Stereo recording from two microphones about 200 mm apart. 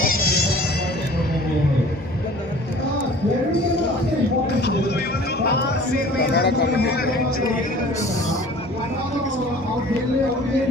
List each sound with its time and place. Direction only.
0.0 s music: 50° left (ahead or behind)
4.6 s music: 55° left (ahead or behind)
5.4 s speech: 55° left (ahead or behind)